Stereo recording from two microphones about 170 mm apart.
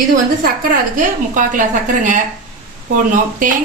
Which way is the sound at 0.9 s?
50° right (ahead or behind).